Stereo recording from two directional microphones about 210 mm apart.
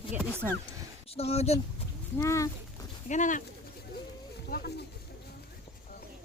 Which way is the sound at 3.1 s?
35° left (ahead or behind).